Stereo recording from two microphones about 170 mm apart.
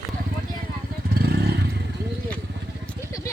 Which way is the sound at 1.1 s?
70° right (ahead or behind).